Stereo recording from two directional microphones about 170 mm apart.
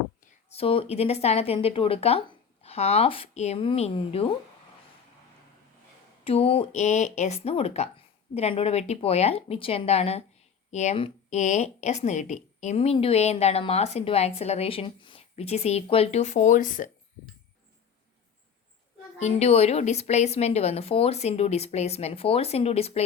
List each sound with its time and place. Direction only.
0.5 s speech: 35° left (ahead or behind)
6.2 s speech: 35° left (ahead or behind); by 16.9 s 50° left (ahead or behind)
19.2 s speech: 40° left (ahead or behind)